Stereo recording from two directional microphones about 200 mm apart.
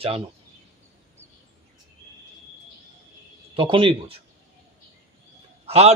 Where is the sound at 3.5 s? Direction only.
25° right (ahead or behind).